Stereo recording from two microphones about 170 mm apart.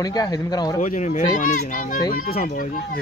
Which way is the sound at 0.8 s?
45° left (ahead or behind).